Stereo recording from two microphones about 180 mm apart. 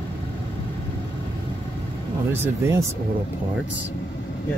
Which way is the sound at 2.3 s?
15° right (ahead or behind).